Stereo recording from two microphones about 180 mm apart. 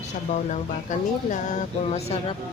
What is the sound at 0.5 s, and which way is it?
Speech, 40° left (ahead or behind).